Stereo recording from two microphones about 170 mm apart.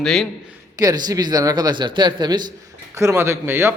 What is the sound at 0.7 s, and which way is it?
A man's voice, 20° right (ahead or behind).